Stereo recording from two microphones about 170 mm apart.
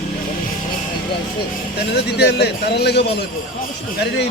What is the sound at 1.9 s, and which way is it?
Speech, 80° left.